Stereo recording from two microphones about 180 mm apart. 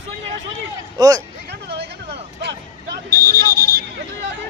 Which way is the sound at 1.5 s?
70° right (ahead or behind).